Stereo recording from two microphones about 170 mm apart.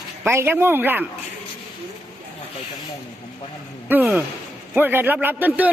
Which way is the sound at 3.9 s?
10° right (ahead or behind).